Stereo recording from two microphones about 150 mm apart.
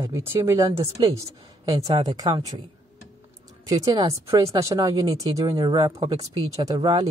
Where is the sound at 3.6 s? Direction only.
25° right (ahead or behind).